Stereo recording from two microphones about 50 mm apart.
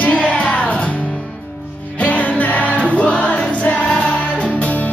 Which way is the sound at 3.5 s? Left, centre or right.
Left.